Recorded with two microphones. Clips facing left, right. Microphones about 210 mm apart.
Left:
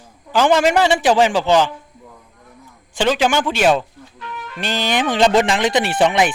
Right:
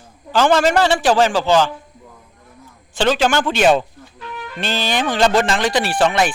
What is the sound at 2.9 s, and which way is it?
Speech, 15° left (ahead or behind).